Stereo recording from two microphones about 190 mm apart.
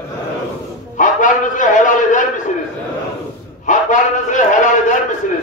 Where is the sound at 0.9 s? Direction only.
40° left (ahead or behind).